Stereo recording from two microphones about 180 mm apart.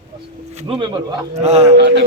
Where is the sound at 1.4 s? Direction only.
35° right (ahead or behind).